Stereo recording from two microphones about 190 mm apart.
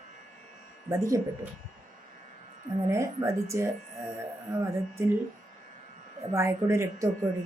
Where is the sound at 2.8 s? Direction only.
15° right (ahead or behind).